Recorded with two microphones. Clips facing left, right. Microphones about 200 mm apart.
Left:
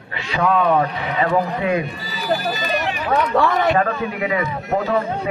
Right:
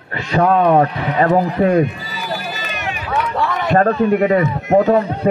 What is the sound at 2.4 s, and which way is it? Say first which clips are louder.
Run: left 5 dB; 40° left (ahead or behind).